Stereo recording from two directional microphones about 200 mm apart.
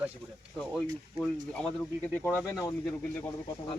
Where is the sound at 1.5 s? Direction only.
5° left (ahead or behind).